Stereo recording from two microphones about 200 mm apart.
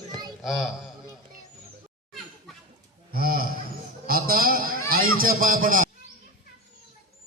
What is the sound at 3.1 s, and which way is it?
A man's voice, 50° right (ahead or behind).